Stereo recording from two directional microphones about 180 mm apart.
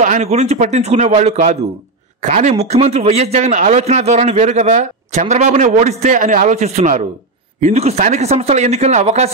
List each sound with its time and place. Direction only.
0.0 s speech: 40° right (ahead or behind)